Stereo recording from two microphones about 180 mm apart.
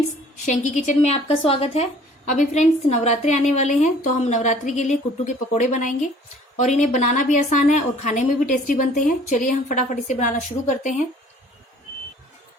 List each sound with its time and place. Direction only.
0.4 s a woman's voice: 45° left (ahead or behind)